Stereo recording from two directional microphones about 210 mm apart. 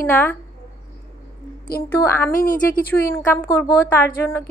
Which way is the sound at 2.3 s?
40° left (ahead or behind).